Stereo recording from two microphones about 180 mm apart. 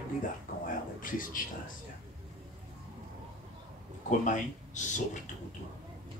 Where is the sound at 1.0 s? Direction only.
50° left (ahead or behind).